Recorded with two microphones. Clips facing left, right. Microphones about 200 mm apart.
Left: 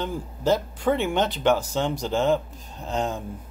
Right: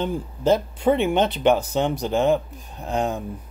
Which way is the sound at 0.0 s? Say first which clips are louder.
Right 3 dB; 20° right (ahead or behind).